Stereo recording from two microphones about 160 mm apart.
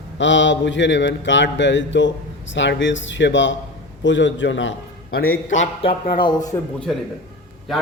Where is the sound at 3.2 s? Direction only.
90° left.